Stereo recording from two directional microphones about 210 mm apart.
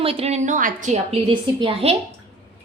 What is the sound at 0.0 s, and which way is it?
A woman's voice, 25° right (ahead or behind).